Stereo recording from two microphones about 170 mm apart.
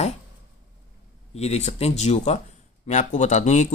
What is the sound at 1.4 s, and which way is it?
Speech, 40° left (ahead or behind).